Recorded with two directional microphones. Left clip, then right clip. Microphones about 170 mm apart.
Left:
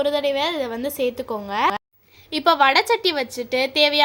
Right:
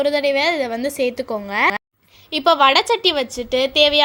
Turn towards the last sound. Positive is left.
turn(degrees=-10)  # may be behind; listen again after turning